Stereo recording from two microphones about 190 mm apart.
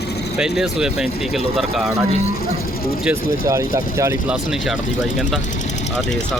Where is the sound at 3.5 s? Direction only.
15° right (ahead or behind).